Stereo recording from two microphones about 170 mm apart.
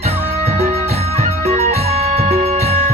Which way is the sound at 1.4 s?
40° right (ahead or behind).